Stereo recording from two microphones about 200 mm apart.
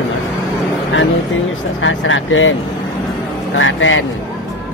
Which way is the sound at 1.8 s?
75° left (ahead or behind).